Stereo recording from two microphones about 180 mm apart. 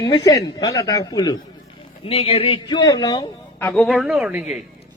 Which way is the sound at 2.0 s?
30° left (ahead or behind).